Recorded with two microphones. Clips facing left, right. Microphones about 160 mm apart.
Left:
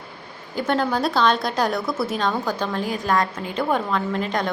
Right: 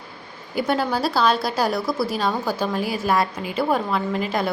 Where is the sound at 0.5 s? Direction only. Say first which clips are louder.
Even; 5° right (ahead or behind).